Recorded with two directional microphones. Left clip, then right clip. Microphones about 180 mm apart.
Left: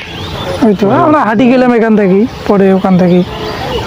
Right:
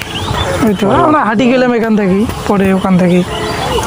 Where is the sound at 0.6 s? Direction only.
30° left (ahead or behind).